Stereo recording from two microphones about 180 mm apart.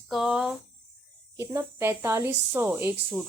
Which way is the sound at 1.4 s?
15° right (ahead or behind).